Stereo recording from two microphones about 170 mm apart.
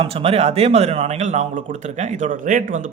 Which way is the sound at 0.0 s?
35° right (ahead or behind).